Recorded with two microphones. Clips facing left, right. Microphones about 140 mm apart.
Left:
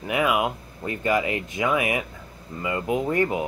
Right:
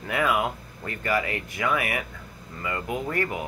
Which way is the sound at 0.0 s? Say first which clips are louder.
Left 2 dB; 15° left (ahead or behind).